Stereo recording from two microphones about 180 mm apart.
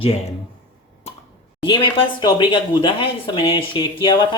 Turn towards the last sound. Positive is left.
turn(degrees=25)  # may be behind; listen again after turning